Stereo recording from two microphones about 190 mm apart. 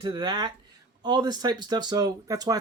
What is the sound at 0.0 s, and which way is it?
Speech, 25° right (ahead or behind).